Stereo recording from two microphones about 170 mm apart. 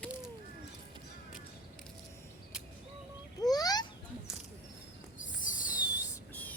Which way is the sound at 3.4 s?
20° left (ahead or behind).